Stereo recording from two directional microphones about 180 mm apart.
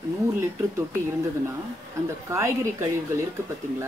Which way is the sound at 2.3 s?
15° right (ahead or behind).